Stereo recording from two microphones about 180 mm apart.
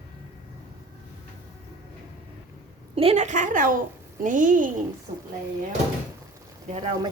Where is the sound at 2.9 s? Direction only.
35° right (ahead or behind).